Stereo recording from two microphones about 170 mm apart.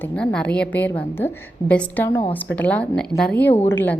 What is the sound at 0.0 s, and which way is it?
A woman's voice, 10° left (ahead or behind).